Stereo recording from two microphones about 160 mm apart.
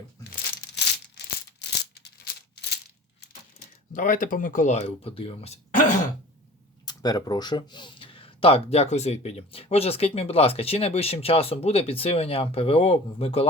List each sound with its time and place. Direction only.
1.1 s rattle: 90° left
3.9 s speech: 55° left (ahead or behind); by 5.5 s 35° left (ahead or behind)
6.8 s speech: 25° left (ahead or behind)